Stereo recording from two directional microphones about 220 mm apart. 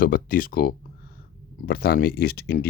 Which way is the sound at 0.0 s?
40° left (ahead or behind).